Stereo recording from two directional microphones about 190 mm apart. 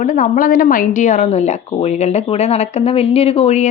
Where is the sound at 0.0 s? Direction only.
45° left (ahead or behind).